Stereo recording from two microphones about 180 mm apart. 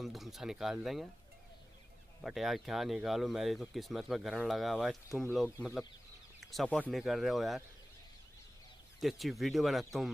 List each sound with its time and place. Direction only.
0.0 s speech: centre (ahead or behind)
2.2 s speech: centre (ahead or behind)
9.0 s speech: centre (ahead or behind)